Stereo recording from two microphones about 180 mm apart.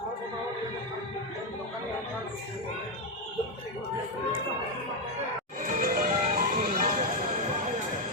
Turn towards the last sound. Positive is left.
turn(degrees=-50)  # may be behind; listen again after turning